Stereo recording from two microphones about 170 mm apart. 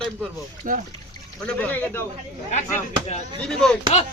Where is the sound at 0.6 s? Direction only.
50° right (ahead or behind).